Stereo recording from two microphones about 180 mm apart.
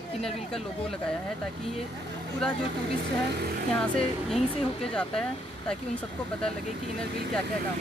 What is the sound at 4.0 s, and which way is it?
Speech, centre (ahead or behind).